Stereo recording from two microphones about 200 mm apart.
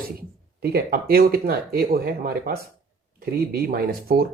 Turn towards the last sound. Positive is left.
turn(degrees=-50)  # may be behind; listen again after turning